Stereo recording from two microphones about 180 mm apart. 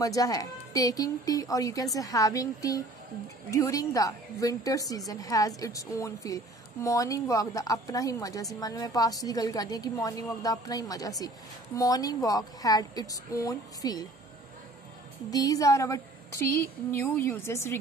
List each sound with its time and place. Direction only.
0.0 s a woman's voice: 20° left (ahead or behind)
15.3 s a woman's voice: 20° left (ahead or behind)